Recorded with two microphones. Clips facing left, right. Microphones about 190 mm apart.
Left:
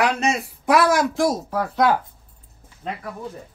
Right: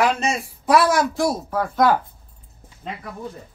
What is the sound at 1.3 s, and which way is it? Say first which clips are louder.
Speech: even; 35° left (ahead or behind).